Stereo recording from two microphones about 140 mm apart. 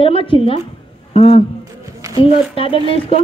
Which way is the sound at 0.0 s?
40° left (ahead or behind).